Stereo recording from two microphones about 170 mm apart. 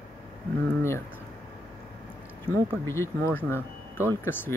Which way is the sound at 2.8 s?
15° left (ahead or behind).